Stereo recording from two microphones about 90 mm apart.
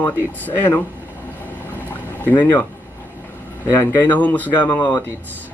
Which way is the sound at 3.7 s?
25° left (ahead or behind).